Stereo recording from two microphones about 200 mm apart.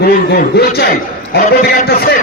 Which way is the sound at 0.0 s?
50° left (ahead or behind).